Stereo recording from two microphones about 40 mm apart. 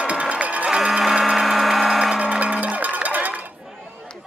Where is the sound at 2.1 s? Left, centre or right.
Right.